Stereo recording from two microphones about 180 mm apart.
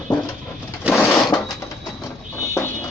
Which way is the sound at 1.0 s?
5° left (ahead or behind).